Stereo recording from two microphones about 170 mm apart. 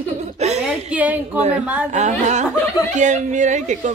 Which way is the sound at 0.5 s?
10° right (ahead or behind).